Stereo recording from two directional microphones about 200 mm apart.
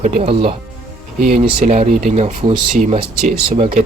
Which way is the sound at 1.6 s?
35° right (ahead or behind).